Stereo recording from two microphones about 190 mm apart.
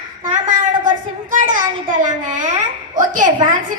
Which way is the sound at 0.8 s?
45° right (ahead or behind).